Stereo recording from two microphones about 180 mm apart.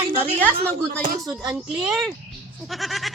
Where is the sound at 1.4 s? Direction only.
5° right (ahead or behind).